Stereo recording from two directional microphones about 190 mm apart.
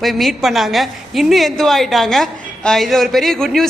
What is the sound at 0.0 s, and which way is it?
A woman's voice, centre (ahead or behind).